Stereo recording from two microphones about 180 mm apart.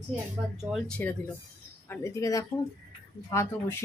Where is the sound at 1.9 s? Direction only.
15° left (ahead or behind).